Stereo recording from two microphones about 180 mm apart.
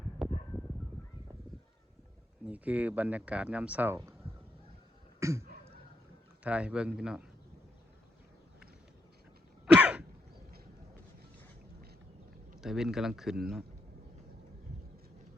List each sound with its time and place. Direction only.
0.2 s a sound: centre (ahead or behind)
2.5 s speech: 10° right (ahead or behind)
5.2 s a sound: 15° right (ahead or behind)
6.4 s speech: 5° right (ahead or behind)
9.7 s throat clearing: 10° right (ahead or behind)
12.5 s speech: centre (ahead or behind)